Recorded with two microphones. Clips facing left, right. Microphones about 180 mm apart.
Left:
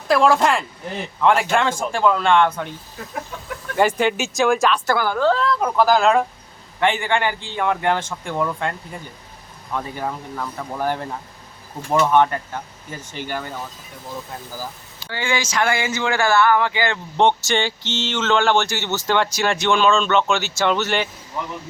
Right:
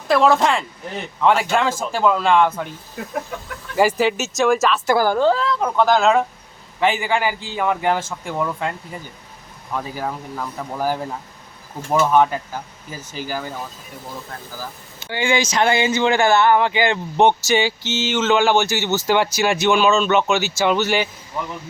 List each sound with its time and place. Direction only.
0.1 s speech: centre (ahead or behind)
3.8 s speech: 5° right (ahead or behind)
4.9 s a woman's voice: 35° right (ahead or behind)
5.3 s speech: centre (ahead or behind)
14.9 s speech: 20° right (ahead or behind); by 21.1 s 5° right (ahead or behind)